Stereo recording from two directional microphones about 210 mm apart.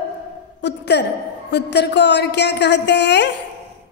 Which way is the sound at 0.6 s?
55° left (ahead or behind).